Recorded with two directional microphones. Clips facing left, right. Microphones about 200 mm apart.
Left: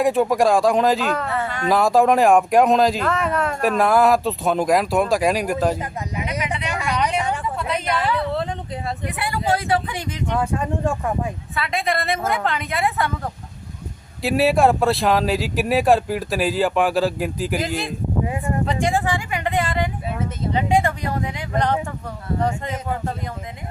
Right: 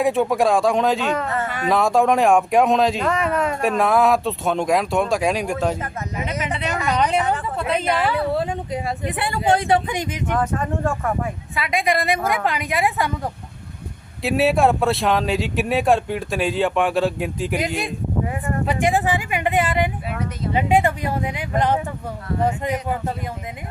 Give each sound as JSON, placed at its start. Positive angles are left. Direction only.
{"t": 0.0, "sound": "speech", "side_deg": 0}
{"t": 6.4, "sound": "speech", "side_deg": -30}
{"t": 7.2, "sound": "speech", "side_deg": 15}
{"t": 7.5, "sound": "speech", "side_deg": -30}
{"t": 8.1, "sound": "a woman's voice", "side_deg": -10}
{"t": 9.1, "sound": "speech", "side_deg": -25}
{"t": 10.3, "sound": "speech", "side_deg": 10}
{"t": 11.9, "sound": "a woman's voice", "side_deg": -15}
{"t": 14.2, "sound": "speech", "side_deg": 0}
{"t": 18.6, "sound": "a woman's voice", "side_deg": -15}